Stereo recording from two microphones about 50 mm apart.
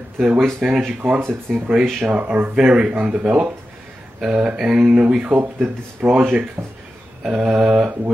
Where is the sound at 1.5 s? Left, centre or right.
Centre.